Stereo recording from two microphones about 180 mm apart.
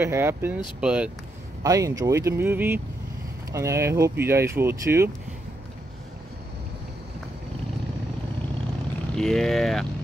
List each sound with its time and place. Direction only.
0.0 s speech: 15° right (ahead or behind)
1.6 s speech: 20° right (ahead or behind)
9.1 s speech: 5° left (ahead or behind)